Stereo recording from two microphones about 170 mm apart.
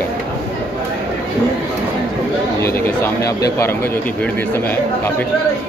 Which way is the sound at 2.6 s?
15° left (ahead or behind).